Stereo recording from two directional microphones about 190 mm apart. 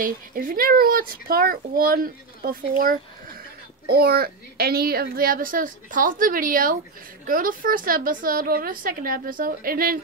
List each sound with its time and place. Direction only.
0.0 s a child's voice: 45° right (ahead or behind)